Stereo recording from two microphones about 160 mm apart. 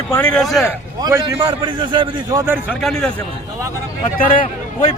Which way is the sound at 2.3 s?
20° right (ahead or behind).